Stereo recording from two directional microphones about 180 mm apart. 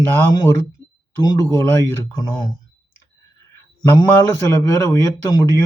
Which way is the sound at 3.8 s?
15° left (ahead or behind).